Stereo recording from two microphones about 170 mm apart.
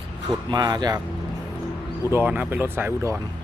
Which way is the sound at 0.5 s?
25° right (ahead or behind).